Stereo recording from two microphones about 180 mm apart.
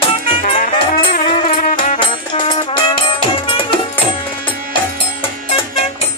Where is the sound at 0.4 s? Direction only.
50° left (ahead or behind).